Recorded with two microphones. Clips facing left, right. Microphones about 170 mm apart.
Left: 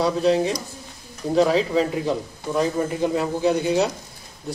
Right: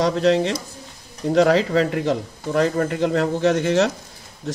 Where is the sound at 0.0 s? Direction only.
80° right.